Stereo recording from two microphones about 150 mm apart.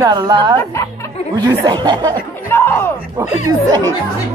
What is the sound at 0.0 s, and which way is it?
Speech, 30° right (ahead or behind).